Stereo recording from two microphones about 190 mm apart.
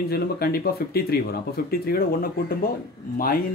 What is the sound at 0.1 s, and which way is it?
Speech, 55° left (ahead or behind).